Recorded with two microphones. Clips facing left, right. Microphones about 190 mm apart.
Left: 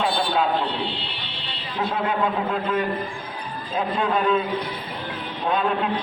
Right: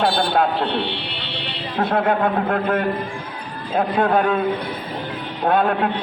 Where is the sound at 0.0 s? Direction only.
65° right (ahead or behind).